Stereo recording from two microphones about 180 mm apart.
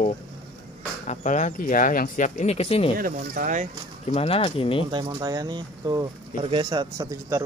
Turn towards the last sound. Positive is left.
turn(degrees=-20)  # may be behind; listen again after turning